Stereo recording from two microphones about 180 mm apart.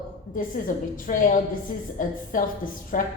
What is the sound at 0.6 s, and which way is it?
Speech, 50° left (ahead or behind).